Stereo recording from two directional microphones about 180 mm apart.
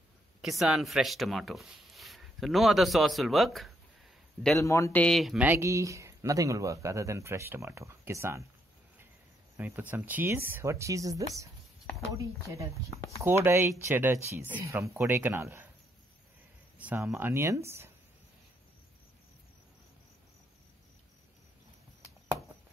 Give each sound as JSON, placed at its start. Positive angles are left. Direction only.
{"t": 0.4, "sound": "speech", "side_deg": 0}
{"t": 4.6, "sound": "speech", "side_deg": 15}
{"t": 5.0, "sound": "speech", "side_deg": 0}
{"t": 9.6, "sound": "speech", "side_deg": -10}
{"t": 16.7, "sound": "speech", "side_deg": -10}